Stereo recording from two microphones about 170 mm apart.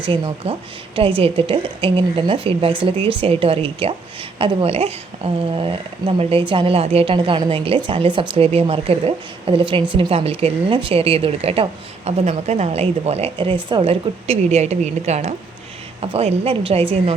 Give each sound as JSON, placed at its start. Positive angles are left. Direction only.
{"t": 0.1, "sound": "speech", "side_deg": -30}